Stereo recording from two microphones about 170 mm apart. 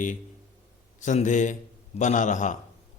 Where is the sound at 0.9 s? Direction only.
45° left (ahead or behind).